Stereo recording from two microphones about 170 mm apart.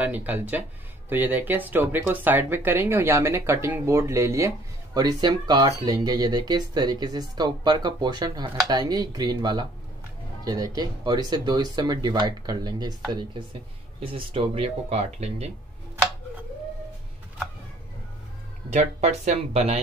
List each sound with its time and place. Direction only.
0.0 s speech: 10° right (ahead or behind); by 15.5 s 40° right (ahead or behind)
18.7 s speech: 45° right (ahead or behind)